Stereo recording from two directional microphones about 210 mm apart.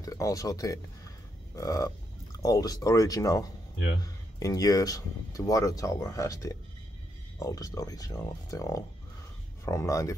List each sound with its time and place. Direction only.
0.0 s speech: 15° left (ahead or behind)
1.5 s frog: 15° left (ahead or behind)
2.4 s speech: 15° left (ahead or behind)